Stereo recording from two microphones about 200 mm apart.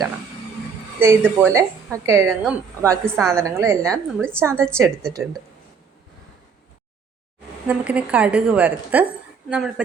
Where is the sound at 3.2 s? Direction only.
Centre (ahead or behind).